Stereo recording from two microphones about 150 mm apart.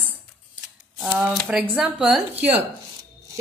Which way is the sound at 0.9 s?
10° right (ahead or behind).